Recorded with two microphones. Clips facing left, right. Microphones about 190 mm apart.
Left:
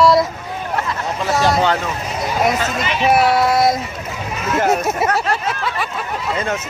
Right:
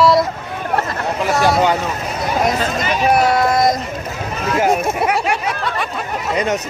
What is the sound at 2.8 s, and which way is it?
Speech, 45° right (ahead or behind).